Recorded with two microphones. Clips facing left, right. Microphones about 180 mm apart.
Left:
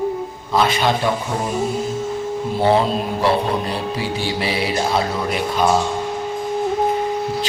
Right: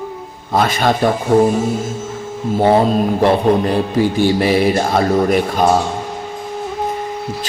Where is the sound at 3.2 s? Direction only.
50° right (ahead or behind).